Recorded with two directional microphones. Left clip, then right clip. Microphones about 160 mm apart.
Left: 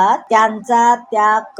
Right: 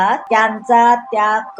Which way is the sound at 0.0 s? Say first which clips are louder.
Left 1 dB; 30° left (ahead or behind).